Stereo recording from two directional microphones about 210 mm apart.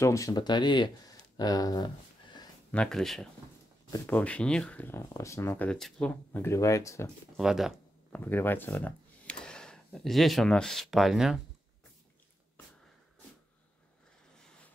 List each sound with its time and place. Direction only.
0.0 s speech: 15° left (ahead or behind)
2.7 s speech: 5° left (ahead or behind)
7.3 s a sound: centre (ahead or behind)
8.2 s speech: 10° left (ahead or behind)